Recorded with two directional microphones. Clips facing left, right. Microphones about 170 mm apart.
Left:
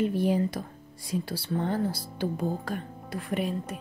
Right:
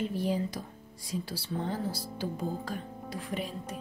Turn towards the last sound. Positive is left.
turn(degrees=60)  # may be behind; listen again after turning